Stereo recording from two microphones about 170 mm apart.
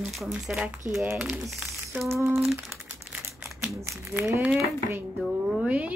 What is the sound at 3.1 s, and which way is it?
Crumpling, 5° right (ahead or behind).